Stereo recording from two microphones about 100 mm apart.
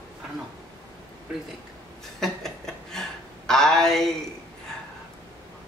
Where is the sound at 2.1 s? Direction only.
5° left (ahead or behind).